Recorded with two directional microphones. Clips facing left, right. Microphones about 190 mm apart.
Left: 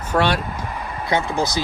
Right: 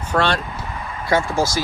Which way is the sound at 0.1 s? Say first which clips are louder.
Left 1 dB; 10° left (ahead or behind).